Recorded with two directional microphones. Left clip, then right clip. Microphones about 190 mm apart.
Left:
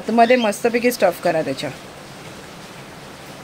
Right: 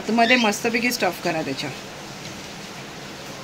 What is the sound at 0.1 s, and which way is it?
Speech, 35° left (ahead or behind).